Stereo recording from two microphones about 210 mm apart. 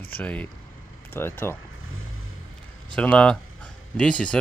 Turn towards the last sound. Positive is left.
turn(degrees=5)  # may be behind; listen again after turning